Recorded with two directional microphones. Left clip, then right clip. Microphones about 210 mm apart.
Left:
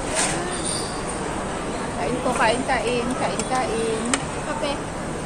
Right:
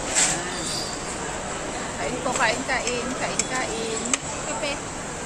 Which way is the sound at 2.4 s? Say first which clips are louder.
Left 3 dB; 5° left (ahead or behind).